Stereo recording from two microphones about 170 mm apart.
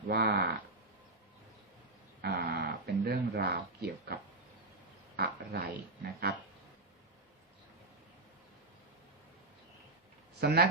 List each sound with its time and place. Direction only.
0.1 s speech: 70° right (ahead or behind)
2.2 s a sound: 65° right (ahead or behind)
5.1 s speech: 70° right (ahead or behind)
10.4 s speech: 65° right (ahead or behind)